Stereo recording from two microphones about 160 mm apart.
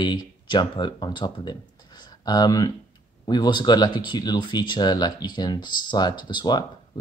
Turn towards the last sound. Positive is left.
turn(degrees=30)  # may be behind; listen again after turning